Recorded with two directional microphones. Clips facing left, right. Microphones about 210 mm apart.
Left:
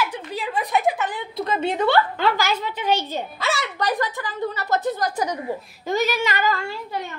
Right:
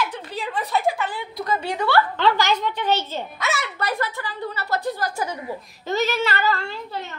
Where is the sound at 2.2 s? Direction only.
10° left (ahead or behind).